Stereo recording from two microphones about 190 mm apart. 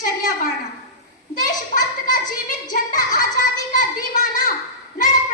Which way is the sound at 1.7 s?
45° left (ahead or behind).